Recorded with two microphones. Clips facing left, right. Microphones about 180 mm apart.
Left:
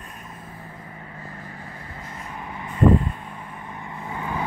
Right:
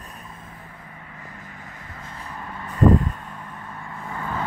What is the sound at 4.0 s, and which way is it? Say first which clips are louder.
Vehicle: left 1 dB; 15° left (ahead or behind).